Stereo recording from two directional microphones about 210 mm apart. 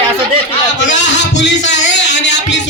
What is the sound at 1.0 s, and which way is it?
Music, 55° left (ahead or behind).